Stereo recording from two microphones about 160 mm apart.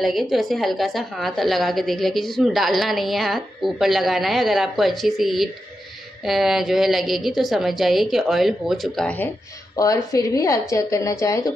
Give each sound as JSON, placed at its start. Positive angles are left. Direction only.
{"t": 0.0, "sound": "a woman's voice", "side_deg": 0}
{"t": 9.8, "sound": "speech", "side_deg": 20}